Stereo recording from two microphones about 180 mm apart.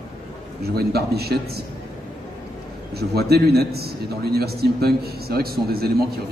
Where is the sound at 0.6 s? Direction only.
60° right (ahead or behind).